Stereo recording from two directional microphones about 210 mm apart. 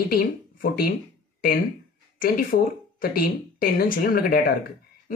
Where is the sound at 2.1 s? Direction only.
45° left (ahead or behind).